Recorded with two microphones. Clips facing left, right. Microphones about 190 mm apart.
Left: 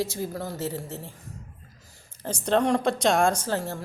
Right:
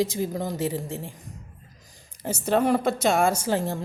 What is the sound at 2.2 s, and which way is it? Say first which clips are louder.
A woman's voice: right 1 dB; 5° right (ahead or behind).